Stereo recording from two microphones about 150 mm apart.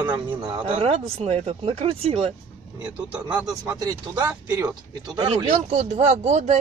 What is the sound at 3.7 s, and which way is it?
Speech, 25° right (ahead or behind).